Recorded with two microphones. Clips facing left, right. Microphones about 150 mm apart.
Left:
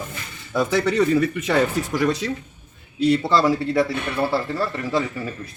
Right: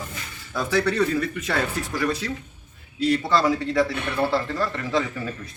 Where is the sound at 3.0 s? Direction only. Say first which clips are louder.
Left 3 dB; 25° left (ahead or behind).